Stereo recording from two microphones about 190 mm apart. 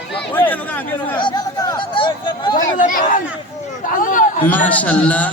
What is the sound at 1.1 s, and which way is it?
Chatter, 20° left (ahead or behind).